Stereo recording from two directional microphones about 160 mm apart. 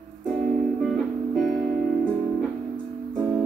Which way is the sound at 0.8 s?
Centre (ahead or behind).